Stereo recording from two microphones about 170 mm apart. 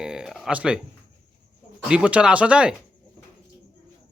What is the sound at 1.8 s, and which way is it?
Speech, 5° right (ahead or behind).